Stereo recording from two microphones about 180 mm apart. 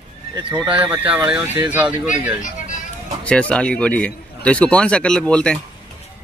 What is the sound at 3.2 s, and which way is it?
Speech, 5° left (ahead or behind).